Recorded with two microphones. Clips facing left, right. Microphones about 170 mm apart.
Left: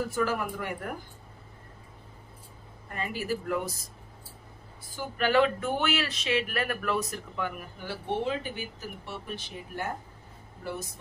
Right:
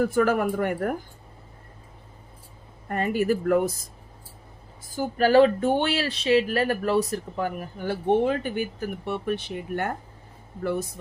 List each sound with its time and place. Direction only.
0.0 s speech: 55° right (ahead or behind)
2.9 s speech: 55° right (ahead or behind)
4.9 s speech: 40° right (ahead or behind); by 10.9 s 60° right (ahead or behind)